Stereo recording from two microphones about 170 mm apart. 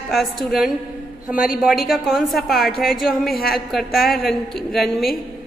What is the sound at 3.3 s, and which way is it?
Speech, 65° left (ahead or behind).